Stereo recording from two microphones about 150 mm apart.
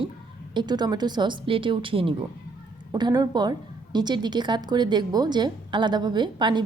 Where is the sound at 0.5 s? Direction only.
30° right (ahead or behind).